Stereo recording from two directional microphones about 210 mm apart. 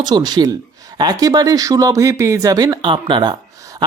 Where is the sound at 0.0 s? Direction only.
20° right (ahead or behind).